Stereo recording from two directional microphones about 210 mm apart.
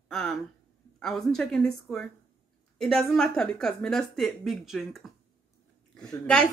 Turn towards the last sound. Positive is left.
turn(degrees=5)  # may be behind; listen again after turning